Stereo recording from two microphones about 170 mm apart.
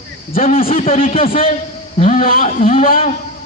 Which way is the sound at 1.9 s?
50° left (ahead or behind).